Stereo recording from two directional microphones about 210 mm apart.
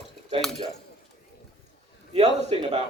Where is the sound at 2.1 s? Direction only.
30° right (ahead or behind).